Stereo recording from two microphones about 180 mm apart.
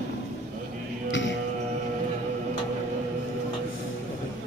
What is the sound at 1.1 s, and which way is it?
Music, 90° left.